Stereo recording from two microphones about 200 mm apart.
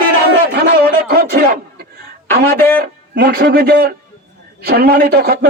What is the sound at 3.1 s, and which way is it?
A man's voice, 55° right (ahead or behind).